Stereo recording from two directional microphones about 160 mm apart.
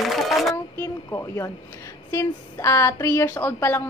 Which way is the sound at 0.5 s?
15° left (ahead or behind).